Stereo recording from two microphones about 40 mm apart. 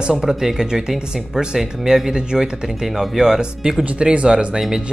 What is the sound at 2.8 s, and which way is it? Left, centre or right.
Speech, centre.